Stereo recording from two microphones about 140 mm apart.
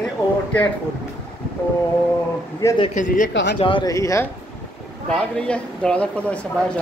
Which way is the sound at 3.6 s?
40° left (ahead or behind).